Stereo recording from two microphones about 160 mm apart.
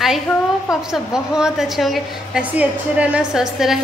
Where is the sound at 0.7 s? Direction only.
5° right (ahead or behind).